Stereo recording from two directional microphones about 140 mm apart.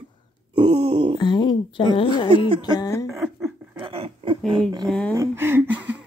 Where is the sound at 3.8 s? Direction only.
40° right (ahead or behind).